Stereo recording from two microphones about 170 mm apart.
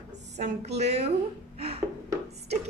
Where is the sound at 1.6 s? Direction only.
35° right (ahead or behind).